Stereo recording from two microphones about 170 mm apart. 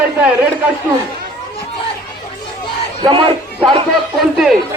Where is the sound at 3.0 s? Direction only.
30° right (ahead or behind).